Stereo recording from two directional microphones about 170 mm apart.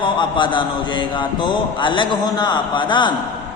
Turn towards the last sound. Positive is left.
turn(degrees=25)  # may be behind; listen again after turning